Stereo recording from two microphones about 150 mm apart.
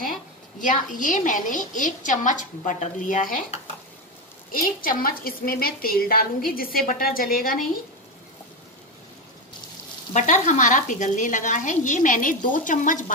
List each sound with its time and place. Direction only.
0.6 s a woman's voice: 60° left (ahead or behind)
10.1 s a woman's voice: 55° left (ahead or behind)